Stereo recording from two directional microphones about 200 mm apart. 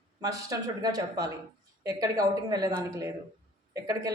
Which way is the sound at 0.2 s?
20° right (ahead or behind).